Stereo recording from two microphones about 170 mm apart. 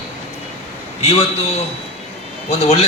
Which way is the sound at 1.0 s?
35° left (ahead or behind).